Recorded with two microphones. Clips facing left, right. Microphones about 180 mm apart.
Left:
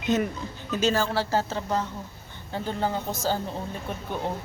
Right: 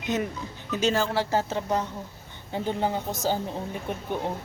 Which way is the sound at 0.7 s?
20° right (ahead or behind).